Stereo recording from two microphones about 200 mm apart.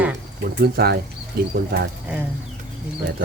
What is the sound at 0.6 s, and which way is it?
Speech, 55° right (ahead or behind).